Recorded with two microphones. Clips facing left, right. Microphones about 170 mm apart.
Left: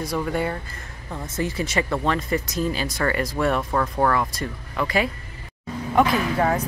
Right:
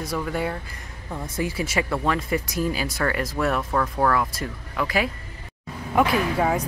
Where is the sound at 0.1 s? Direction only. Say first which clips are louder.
Left 1 dB; centre (ahead or behind).